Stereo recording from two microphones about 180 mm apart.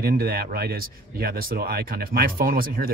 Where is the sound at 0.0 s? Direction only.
60° right (ahead or behind).